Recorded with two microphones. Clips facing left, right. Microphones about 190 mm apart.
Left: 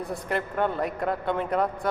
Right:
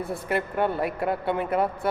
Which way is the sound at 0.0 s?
5° right (ahead or behind).